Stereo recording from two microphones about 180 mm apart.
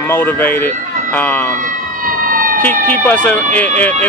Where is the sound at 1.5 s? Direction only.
50° right (ahead or behind).